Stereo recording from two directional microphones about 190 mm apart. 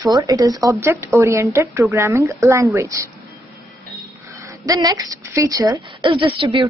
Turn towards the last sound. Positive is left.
turn(degrees=-25)  # may be behind; listen again after turning